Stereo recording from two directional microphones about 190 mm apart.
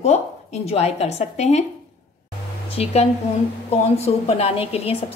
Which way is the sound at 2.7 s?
35° left (ahead or behind).